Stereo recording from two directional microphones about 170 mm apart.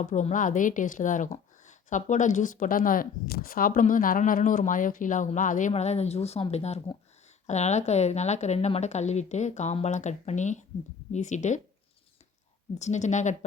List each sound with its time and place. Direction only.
0.0 s a woman's voice: 45° left (ahead or behind)
12.8 s a woman's voice: 45° left (ahead or behind)